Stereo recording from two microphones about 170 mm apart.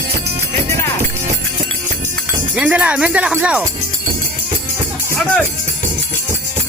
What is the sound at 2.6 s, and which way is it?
Speech, 10° right (ahead or behind).